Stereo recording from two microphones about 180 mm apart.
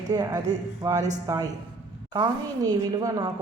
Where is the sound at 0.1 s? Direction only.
20° right (ahead or behind).